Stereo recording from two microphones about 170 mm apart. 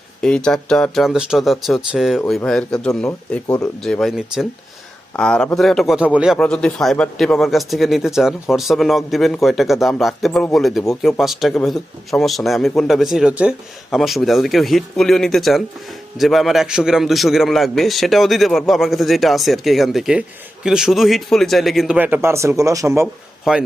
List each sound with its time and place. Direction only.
0.2 s speech: 5° left (ahead or behind)
3.1 s speech: 15° left (ahead or behind)
3.6 s speech: 5° left (ahead or behind); by 23.0 s 20° right (ahead or behind)
23.4 s a man's voice: 5° right (ahead or behind)